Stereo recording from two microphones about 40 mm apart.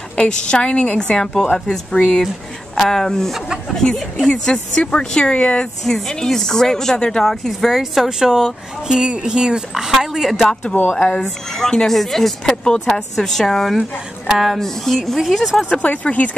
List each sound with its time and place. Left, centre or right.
0.2 s a woman's voice: left
5.9 s a woman's voice: centre
10.9 s a woman's voice: centre
13.7 s speech: centre
14.5 s speech: centre
15.8 s speech: left